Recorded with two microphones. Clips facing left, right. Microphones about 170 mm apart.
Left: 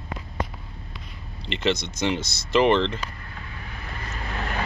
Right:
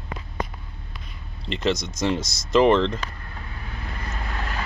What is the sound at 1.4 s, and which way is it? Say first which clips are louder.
Speech: right 1 dB; centre (ahead or behind).